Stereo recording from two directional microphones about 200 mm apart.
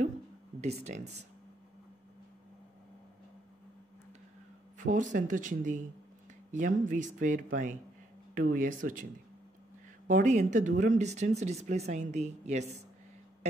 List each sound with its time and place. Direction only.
0.6 s speech: 35° right (ahead or behind)
4.7 s speech: 40° right (ahead or behind)
10.0 s speech: 40° right (ahead or behind)